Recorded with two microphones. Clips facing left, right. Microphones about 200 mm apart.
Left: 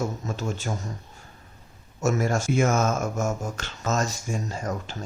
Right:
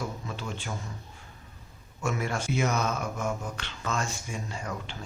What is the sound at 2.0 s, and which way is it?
Speech, 40° left (ahead or behind).